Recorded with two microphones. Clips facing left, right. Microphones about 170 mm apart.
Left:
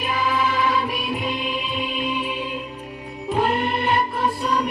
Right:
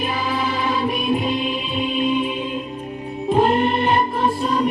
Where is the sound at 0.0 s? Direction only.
30° right (ahead or behind).